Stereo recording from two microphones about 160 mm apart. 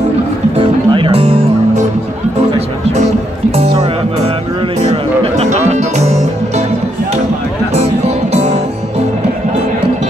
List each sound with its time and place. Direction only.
0.6 s music: 35° right (ahead or behind)
4.8 s music: 40° right (ahead or behind)
7.7 s music: 45° right (ahead or behind)